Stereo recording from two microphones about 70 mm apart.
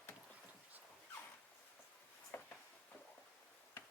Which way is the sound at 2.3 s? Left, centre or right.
Left.